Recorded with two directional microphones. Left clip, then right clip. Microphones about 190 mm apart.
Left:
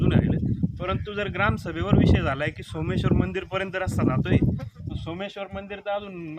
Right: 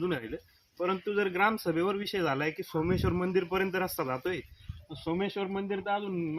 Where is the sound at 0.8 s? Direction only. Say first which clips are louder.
Right 1 dB; 25° left (ahead or behind).